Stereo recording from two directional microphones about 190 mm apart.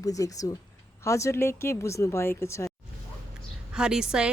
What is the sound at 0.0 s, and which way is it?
Speech, 20° left (ahead or behind).